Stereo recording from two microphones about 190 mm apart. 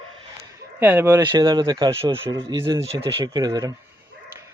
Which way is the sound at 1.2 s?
25° right (ahead or behind).